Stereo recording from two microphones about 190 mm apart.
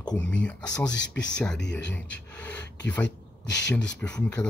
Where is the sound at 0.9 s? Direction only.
70° left (ahead or behind).